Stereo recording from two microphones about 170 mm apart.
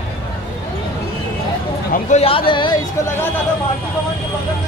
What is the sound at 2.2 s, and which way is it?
Speech, 30° left (ahead or behind).